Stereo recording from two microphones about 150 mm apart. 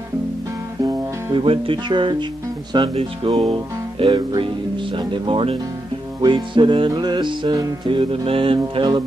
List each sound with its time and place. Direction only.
0.8 s music: 35° right (ahead or behind)